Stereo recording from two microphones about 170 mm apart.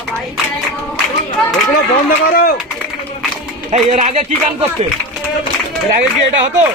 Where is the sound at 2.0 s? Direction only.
60° left (ahead or behind).